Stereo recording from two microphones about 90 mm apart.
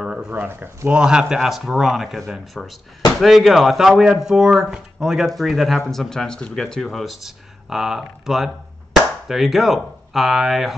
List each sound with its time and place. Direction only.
0.0 s a sound: 10° right (ahead or behind)
0.5 s speech: 20° right (ahead or behind)
0.9 s speech: 10° right (ahead or behind)